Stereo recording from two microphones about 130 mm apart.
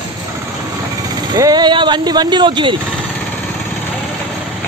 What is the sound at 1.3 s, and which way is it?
Speech, 30° right (ahead or behind).